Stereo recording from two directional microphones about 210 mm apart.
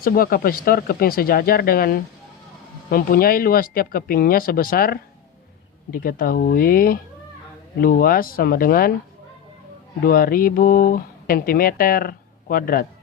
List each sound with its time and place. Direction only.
0.0 s speech: 45° left (ahead or behind)
10.0 s speech: 45° left (ahead or behind)